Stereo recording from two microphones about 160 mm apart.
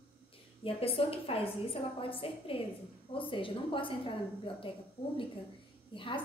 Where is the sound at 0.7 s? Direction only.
35° left (ahead or behind).